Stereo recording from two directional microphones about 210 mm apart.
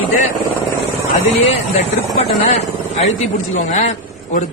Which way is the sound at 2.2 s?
30° left (ahead or behind).